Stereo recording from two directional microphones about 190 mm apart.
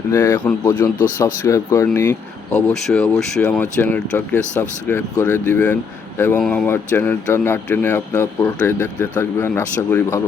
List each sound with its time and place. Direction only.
0.1 s speech: 15° left (ahead or behind)